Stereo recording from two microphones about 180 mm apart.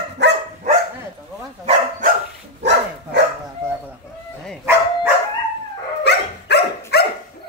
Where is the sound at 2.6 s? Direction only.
70° right (ahead or behind).